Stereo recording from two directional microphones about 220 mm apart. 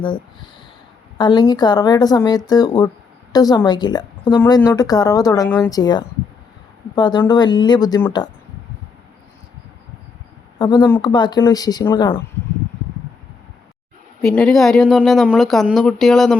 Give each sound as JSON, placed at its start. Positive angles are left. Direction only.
{"t": 1.2, "sound": "speech", "side_deg": 20}
{"t": 10.6, "sound": "speech", "side_deg": 20}
{"t": 14.2, "sound": "speech", "side_deg": 0}